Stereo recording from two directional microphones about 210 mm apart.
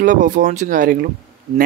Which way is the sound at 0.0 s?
40° right (ahead or behind).